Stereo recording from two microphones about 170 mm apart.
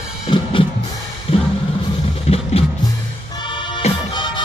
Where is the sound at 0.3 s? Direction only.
30° left (ahead or behind).